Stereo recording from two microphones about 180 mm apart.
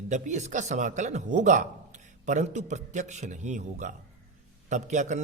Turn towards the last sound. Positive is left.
turn(degrees=-40)  # may be behind; listen again after turning